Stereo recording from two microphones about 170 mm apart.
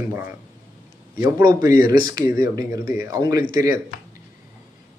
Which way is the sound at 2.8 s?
55° left (ahead or behind).